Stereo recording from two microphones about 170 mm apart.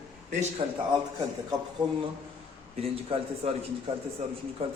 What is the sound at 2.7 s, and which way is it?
Speech, 35° right (ahead or behind).